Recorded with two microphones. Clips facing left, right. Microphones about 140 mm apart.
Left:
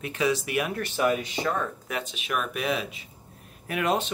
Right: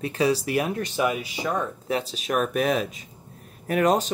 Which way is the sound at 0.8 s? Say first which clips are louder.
Even; 10° right (ahead or behind).